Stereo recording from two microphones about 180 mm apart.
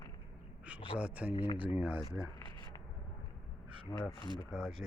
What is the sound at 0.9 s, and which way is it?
Speech, 5° right (ahead or behind).